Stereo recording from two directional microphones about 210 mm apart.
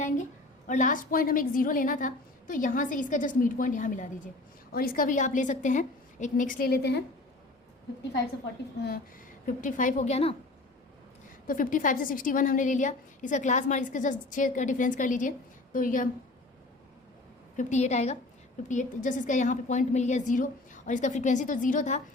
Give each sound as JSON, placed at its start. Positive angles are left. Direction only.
{"t": 0.7, "sound": "a woman's voice", "side_deg": 35}
{"t": 9.5, "sound": "a woman's voice", "side_deg": 40}
{"t": 11.4, "sound": "a woman's voice", "side_deg": 40}
{"t": 17.6, "sound": "a woman's voice", "side_deg": 35}